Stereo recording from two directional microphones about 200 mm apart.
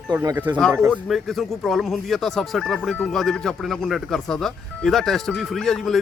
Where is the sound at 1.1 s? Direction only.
Centre (ahead or behind).